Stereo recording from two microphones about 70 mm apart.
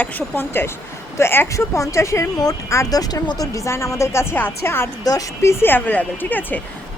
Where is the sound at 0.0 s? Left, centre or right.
Left.